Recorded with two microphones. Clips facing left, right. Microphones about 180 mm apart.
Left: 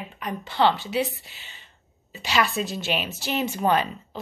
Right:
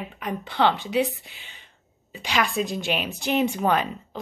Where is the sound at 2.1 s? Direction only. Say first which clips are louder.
Left 1 dB; 5° left (ahead or behind).